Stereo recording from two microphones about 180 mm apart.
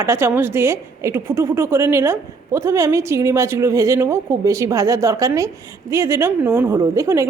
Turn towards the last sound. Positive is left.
turn(degrees=-15)  # may be behind; listen again after turning